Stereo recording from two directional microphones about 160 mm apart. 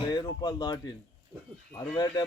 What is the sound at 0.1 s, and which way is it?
Speech, 30° left (ahead or behind).